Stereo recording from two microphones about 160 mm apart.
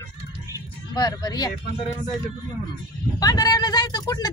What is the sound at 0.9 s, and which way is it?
Speech, 25° left (ahead or behind).